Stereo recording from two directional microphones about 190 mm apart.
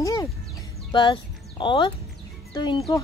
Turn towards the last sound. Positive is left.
turn(degrees=20)  # may be behind; listen again after turning